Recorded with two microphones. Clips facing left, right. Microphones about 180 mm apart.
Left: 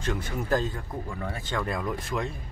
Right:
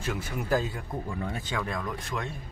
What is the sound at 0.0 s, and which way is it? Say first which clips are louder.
Speech: left 2 dB; 5° right (ahead or behind).